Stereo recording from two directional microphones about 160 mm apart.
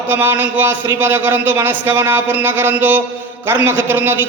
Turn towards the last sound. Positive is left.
turn(degrees=-15)  # may be behind; listen again after turning